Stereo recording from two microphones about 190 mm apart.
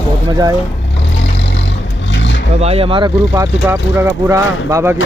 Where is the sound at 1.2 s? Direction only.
65° left (ahead or behind).